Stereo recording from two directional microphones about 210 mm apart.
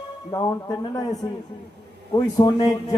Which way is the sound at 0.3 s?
20° left (ahead or behind).